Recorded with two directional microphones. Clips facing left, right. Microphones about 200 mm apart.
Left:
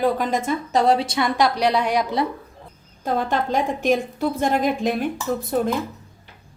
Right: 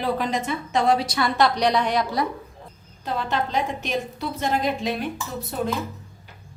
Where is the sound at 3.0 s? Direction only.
50° left (ahead or behind).